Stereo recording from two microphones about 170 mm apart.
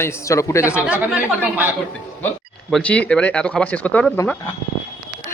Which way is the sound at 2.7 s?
10° left (ahead or behind).